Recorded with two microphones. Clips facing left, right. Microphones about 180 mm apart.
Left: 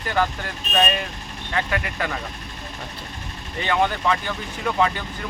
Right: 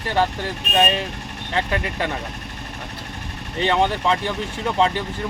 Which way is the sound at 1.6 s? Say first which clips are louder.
Right 2 dB; 30° right (ahead or behind).